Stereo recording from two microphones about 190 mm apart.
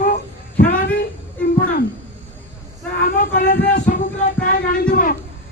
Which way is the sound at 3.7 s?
45° left (ahead or behind).